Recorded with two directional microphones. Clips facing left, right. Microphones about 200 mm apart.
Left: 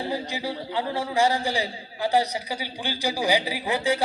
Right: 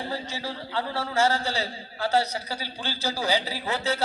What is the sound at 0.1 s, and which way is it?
A man's voice, 15° left (ahead or behind).